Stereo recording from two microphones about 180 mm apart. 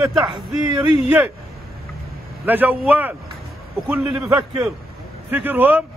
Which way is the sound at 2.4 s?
10° right (ahead or behind).